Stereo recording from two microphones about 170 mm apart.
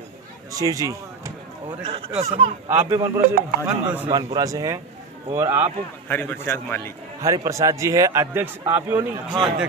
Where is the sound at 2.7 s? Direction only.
20° right (ahead or behind).